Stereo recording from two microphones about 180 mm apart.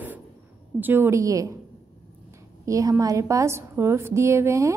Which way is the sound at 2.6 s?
15° right (ahead or behind).